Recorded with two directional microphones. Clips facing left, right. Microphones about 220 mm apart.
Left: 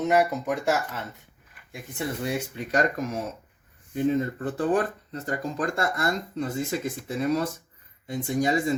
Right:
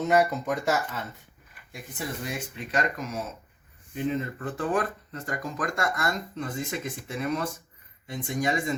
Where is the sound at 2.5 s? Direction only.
40° left (ahead or behind).